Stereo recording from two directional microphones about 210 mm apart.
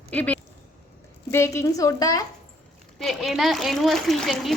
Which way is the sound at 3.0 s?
Centre (ahead or behind).